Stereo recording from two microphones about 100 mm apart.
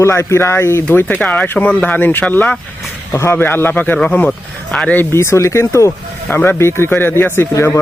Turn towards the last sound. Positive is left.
turn(degrees=25)  # may be behind; listen again after turning